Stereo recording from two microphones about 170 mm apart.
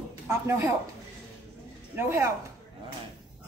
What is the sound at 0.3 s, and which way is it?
Speech, 15° right (ahead or behind).